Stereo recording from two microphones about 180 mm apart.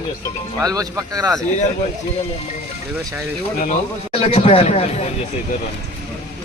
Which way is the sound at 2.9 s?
15° right (ahead or behind).